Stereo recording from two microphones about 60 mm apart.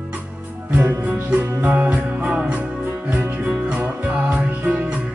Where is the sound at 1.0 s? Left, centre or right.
Right.